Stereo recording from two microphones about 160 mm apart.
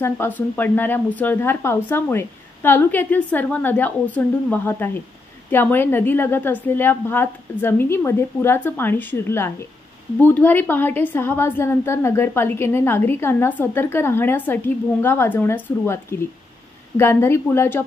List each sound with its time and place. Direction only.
0.0 s a woman's voice: 15° left (ahead or behind)